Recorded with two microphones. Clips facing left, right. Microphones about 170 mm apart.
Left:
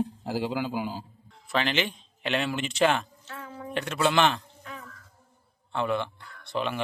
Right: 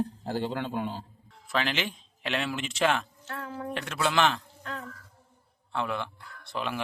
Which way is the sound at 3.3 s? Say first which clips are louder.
Right 4 dB; 70° right (ahead or behind).